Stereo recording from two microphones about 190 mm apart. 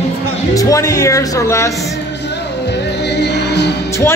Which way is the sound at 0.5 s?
15° left (ahead or behind).